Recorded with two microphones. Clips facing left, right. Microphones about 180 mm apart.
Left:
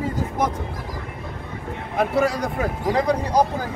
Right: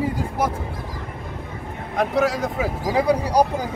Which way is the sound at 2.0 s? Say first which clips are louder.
Even; centre (ahead or behind).